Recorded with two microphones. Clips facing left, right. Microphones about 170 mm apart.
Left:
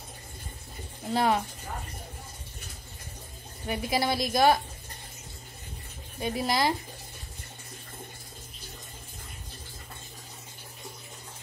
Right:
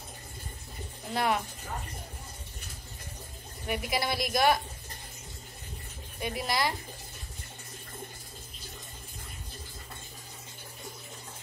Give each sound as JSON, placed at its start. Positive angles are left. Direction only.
{"t": 1.1, "sound": "a woman's voice", "side_deg": 30}
{"t": 3.6, "sound": "a woman's voice", "side_deg": 30}
{"t": 6.2, "sound": "a woman's voice", "side_deg": 25}